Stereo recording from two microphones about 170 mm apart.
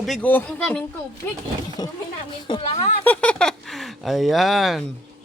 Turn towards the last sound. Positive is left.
turn(degrees=0)  # may be behind; listen again after turning